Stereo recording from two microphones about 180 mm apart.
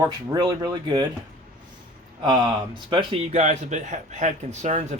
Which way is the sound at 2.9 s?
30° right (ahead or behind).